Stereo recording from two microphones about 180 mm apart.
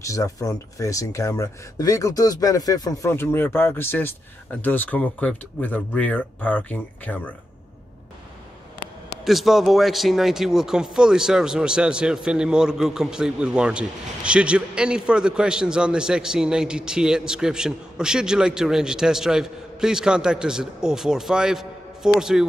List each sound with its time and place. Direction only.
0.0 s speech: 15° left (ahead or behind)
9.2 s speech: centre (ahead or behind)